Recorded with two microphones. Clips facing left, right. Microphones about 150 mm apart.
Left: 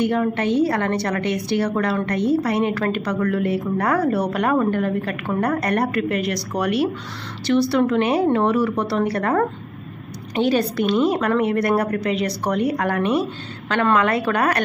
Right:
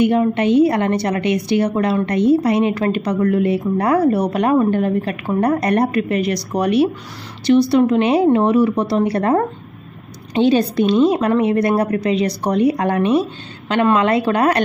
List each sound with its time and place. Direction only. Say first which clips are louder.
0.0 s a woman's voice: right 5 dB; 20° right (ahead or behind)